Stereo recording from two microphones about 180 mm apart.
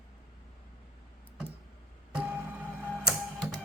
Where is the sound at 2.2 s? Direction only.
5° right (ahead or behind).